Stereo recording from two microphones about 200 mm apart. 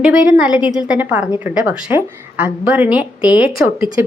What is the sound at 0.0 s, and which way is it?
A woman's voice, 5° right (ahead or behind).